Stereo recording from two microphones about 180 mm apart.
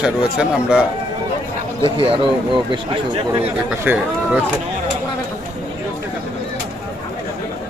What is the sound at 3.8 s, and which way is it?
Speech, 10° right (ahead or behind).